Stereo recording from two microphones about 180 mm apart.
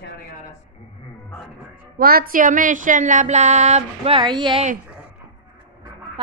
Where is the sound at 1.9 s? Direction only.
55° right (ahead or behind); by 4.6 s 25° right (ahead or behind).